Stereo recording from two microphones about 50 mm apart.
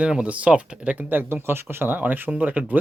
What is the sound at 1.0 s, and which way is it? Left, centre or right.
Speech, right.